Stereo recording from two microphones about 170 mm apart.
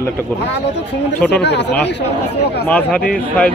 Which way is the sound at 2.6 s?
10° left (ahead or behind).